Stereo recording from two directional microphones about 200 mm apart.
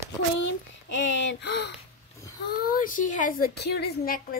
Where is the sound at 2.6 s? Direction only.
45° left (ahead or behind).